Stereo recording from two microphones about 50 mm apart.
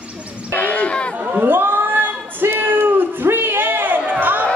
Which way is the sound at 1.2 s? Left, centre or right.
Right.